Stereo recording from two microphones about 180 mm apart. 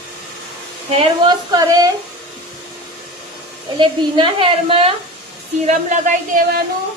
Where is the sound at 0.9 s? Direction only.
30° right (ahead or behind).